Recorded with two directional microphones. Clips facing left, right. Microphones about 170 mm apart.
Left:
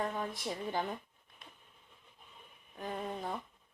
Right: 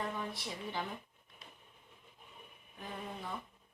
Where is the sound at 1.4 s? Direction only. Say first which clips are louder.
Even; 50° left (ahead or behind).